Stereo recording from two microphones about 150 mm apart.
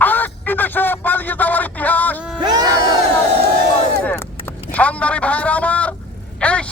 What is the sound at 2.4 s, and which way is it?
Crowd, 25° right (ahead or behind).